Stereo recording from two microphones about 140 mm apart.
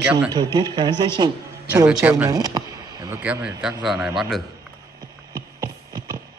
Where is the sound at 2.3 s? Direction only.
30° right (ahead or behind).